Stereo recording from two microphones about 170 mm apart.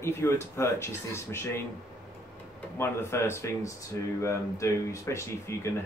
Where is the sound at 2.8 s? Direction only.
15° left (ahead or behind).